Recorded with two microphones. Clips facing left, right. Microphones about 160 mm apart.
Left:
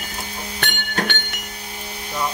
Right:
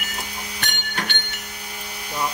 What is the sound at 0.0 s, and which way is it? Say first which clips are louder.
Music: left 2 dB; 30° left (ahead or behind).